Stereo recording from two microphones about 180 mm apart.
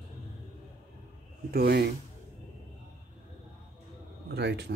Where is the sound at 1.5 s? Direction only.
60° right (ahead or behind).